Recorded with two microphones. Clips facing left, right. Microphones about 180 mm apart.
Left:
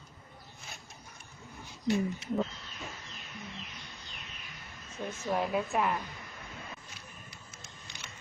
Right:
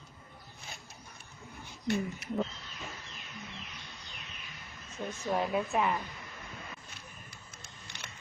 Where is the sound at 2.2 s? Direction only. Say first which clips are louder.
Left 3 dB; 25° left (ahead or behind).